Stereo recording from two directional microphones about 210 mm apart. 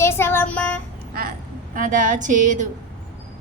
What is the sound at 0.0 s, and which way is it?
Child singing, 10° left (ahead or behind).